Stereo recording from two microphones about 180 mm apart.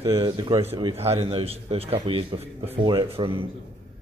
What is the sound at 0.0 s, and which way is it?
A man's voice, 25° right (ahead or behind).